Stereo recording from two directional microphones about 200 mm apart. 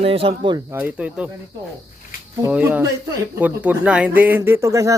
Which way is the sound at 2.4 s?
10° right (ahead or behind).